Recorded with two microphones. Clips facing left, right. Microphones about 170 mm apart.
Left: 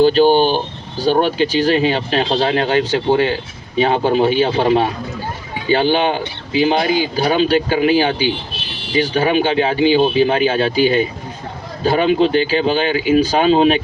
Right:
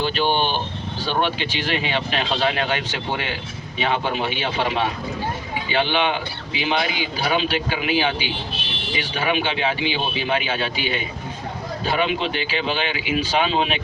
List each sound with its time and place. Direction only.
0.0 s speech: 40° left (ahead or behind)